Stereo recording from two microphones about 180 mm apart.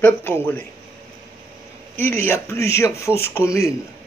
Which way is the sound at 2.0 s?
10° left (ahead or behind).